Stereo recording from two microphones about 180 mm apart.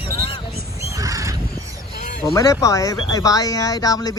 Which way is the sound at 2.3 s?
20° left (ahead or behind).